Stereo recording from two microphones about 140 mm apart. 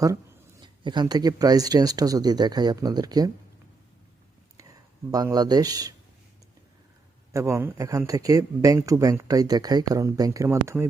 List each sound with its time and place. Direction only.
0.0 s speech: 25° right (ahead or behind)
5.1 s speech: 25° right (ahead or behind)
7.3 s speech: 20° right (ahead or behind)